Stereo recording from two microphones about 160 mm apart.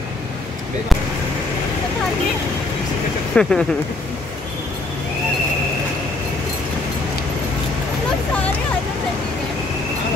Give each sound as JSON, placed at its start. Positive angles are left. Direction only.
{"t": 3.3, "sound": "speech", "side_deg": 5}